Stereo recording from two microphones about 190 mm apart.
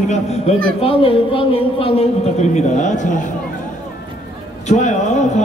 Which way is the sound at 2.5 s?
40° left (ahead or behind).